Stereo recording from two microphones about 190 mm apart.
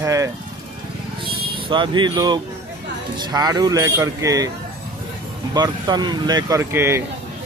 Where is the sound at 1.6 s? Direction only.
25° right (ahead or behind).